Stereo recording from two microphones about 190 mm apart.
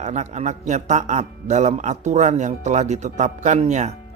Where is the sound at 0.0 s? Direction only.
35° right (ahead or behind).